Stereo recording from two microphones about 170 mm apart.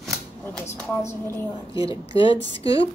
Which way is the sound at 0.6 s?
15° left (ahead or behind).